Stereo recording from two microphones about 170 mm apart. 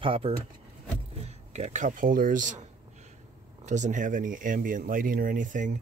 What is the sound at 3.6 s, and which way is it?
Speech, 45° right (ahead or behind).